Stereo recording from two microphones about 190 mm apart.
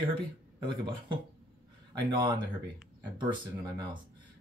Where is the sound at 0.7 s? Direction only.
25° right (ahead or behind).